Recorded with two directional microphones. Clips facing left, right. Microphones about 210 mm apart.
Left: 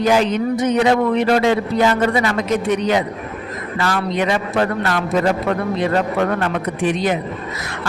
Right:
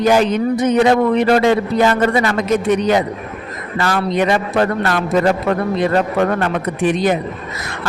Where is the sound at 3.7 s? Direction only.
50° right (ahead or behind).